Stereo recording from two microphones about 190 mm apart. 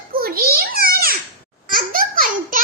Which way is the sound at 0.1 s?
50° right (ahead or behind).